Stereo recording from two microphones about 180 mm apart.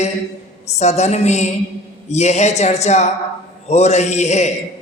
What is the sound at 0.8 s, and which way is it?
Speech, 40° left (ahead or behind).